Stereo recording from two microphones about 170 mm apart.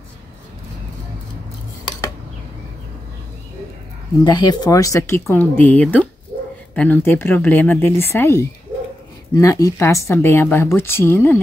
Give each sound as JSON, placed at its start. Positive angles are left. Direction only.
{"t": 4.2, "sound": "speech", "side_deg": 25}